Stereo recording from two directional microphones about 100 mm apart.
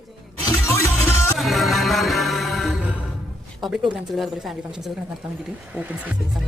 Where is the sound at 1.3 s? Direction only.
Centre (ahead or behind).